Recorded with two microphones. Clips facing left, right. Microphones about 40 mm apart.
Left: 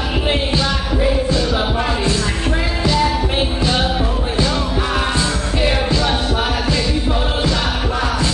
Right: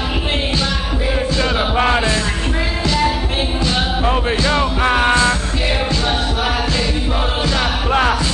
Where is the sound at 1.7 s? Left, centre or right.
Right.